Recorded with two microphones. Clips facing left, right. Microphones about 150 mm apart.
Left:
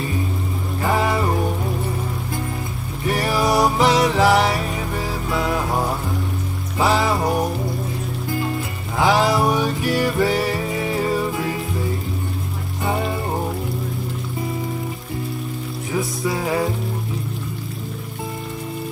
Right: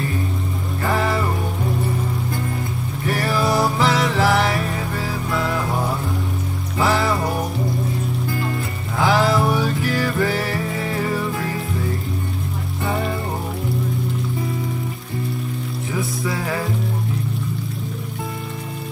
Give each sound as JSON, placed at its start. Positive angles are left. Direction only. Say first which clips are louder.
{"t": 0.8, "sound": "music", "louder": "left 1 dB", "side_deg": 20}
{"t": 3.1, "sound": "music", "louder": "left 1 dB", "side_deg": 20}
{"t": 6.8, "sound": "music", "louder": "left 1 dB", "side_deg": 20}
{"t": 9.0, "sound": "music", "louder": "left 1 dB", "side_deg": 20}
{"t": 16.3, "sound": "music", "louder": "left 5 dB", "side_deg": 20}